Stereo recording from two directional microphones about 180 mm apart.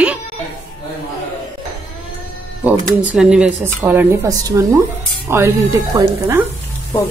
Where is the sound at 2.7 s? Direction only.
10° right (ahead or behind).